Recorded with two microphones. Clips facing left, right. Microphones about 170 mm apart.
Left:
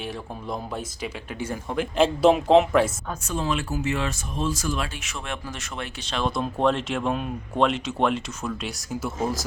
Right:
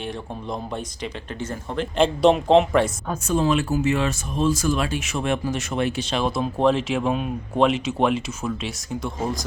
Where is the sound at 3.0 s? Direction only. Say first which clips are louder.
Right 7 dB; 40° right (ahead or behind).